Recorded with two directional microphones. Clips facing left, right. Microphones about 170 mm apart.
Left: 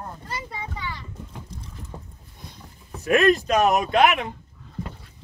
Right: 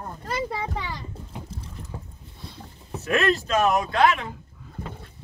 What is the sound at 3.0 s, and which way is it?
Speech, 15° left (ahead or behind).